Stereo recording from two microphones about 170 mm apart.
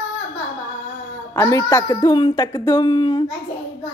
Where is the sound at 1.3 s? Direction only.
20° left (ahead or behind).